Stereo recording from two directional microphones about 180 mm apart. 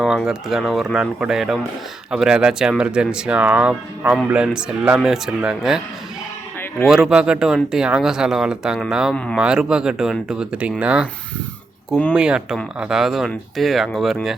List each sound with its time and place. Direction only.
0.0 s speech: centre (ahead or behind)
6.8 s speech: centre (ahead or behind)
12.1 s speech: 5° right (ahead or behind)